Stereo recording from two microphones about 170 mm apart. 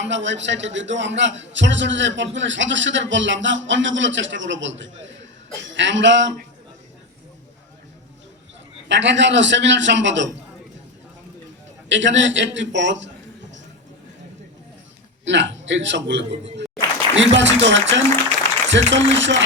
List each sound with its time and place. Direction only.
0.0 s a man's voice: 90° right
8.9 s a man's voice: 90° right
11.9 s a man's voice: 90° right
15.2 s a man's voice: 90° right